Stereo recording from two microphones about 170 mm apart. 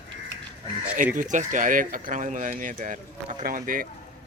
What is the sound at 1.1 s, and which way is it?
Speech, 50° right (ahead or behind).